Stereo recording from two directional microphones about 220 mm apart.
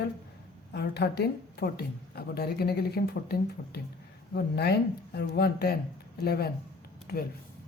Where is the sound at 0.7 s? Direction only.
50° left (ahead or behind).